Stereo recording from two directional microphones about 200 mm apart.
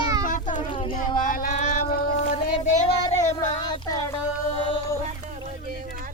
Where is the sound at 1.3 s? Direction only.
40° left (ahead or behind).